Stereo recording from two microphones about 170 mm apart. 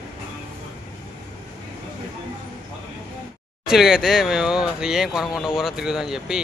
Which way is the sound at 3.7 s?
5° right (ahead or behind).